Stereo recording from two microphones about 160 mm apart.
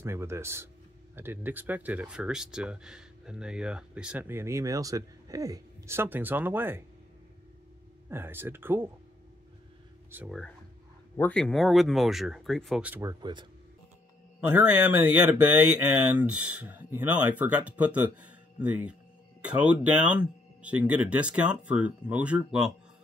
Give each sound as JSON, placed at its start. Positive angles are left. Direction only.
{"t": 0.0, "sound": "speech", "side_deg": -15}
{"t": 8.1, "sound": "speech", "side_deg": -15}
{"t": 10.1, "sound": "speech", "side_deg": -15}
{"t": 11.1, "sound": "speech", "side_deg": 10}
{"t": 13.2, "sound": "speech", "side_deg": -30}
{"t": 14.4, "sound": "speech", "side_deg": -10}